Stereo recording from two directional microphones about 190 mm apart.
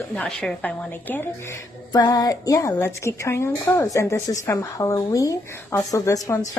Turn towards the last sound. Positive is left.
turn(degrees=15)  # may be behind; listen again after turning